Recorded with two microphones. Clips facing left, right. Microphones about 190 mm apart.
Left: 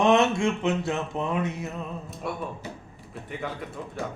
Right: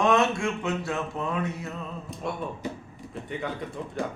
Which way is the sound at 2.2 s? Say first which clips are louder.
Even; 5° left (ahead or behind).